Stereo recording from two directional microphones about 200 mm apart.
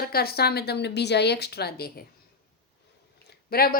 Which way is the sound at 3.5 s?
50° left (ahead or behind).